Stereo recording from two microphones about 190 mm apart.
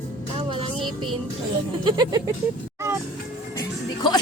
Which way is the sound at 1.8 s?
20° right (ahead or behind).